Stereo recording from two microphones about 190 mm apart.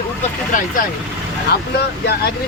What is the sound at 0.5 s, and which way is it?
Speech, 45° left (ahead or behind).